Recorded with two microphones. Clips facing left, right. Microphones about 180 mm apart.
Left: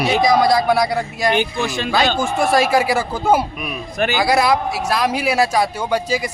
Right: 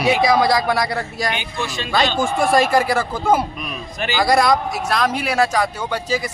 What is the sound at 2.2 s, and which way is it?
A man's voice, centre (ahead or behind).